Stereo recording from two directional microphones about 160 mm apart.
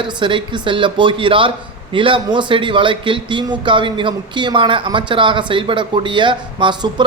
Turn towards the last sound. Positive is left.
turn(degrees=-30)  # may be behind; listen again after turning